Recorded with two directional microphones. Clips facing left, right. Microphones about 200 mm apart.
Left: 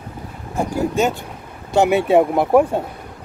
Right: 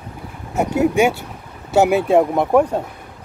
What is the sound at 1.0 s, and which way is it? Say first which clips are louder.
Speech: right 2 dB; 15° right (ahead or behind).